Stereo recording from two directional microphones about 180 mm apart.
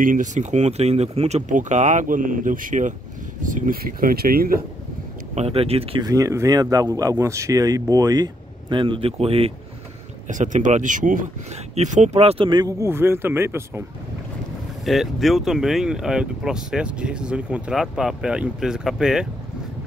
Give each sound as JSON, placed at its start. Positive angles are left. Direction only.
{"t": 0.0, "sound": "speech", "side_deg": -45}
{"t": 5.3, "sound": "speech", "side_deg": -35}
{"t": 6.0, "sound": "speech", "side_deg": -15}
{"t": 10.2, "sound": "speech", "side_deg": -45}
{"t": 14.9, "sound": "speech", "side_deg": 0}